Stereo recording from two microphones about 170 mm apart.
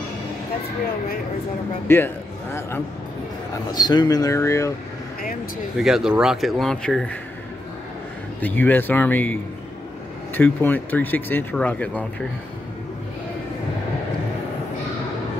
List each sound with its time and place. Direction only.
1.9 s a man's voice: 15° left (ahead or behind)
3.7 s speech: 25° left (ahead or behind)
5.8 s speech: centre (ahead or behind)
8.4 s speech: 10° left (ahead or behind)